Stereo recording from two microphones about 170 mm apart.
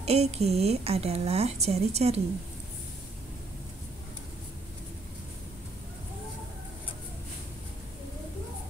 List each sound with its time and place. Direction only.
0.0 s speech: 40° right (ahead or behind)